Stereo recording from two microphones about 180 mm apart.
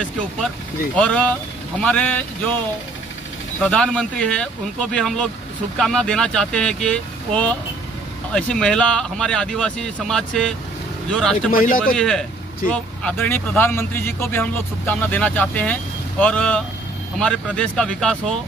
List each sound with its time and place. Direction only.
0.9 s speech: 5° left (ahead or behind)
3.6 s speech: 5° left (ahead or behind)
11.5 s speech: 50° left (ahead or behind)
11.8 s speech: 5° left (ahead or behind)